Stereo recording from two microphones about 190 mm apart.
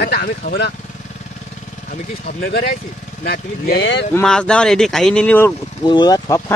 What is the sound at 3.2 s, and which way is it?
Speech, 50° left (ahead or behind).